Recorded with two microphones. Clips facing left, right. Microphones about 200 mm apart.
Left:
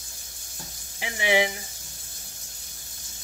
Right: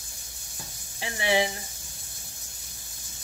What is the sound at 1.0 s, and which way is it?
Speech, 20° left (ahead or behind).